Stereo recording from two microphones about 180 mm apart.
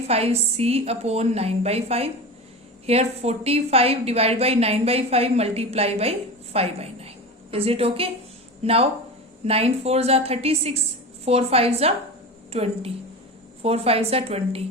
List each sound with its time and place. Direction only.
0.1 s a woman's voice: 35° right (ahead or behind)